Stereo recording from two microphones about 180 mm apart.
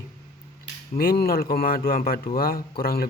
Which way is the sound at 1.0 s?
55° left (ahead or behind).